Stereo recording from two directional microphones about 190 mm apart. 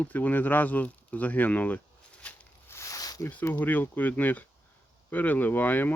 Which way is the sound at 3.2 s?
10° left (ahead or behind).